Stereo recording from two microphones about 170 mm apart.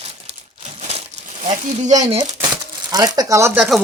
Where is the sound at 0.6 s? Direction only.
40° right (ahead or behind).